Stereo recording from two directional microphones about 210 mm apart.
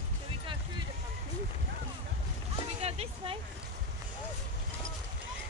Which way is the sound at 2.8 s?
30° right (ahead or behind).